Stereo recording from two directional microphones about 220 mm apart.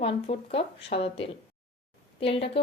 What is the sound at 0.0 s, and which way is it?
A woman's voice, 25° left (ahead or behind).